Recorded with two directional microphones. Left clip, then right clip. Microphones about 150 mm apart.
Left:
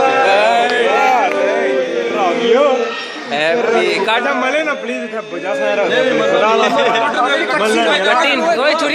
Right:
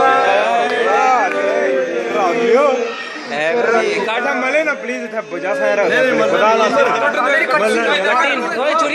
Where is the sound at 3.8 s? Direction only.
35° left (ahead or behind).